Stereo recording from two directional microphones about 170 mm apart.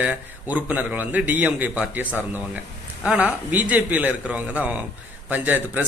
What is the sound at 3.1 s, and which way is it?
Speech, 5° right (ahead or behind).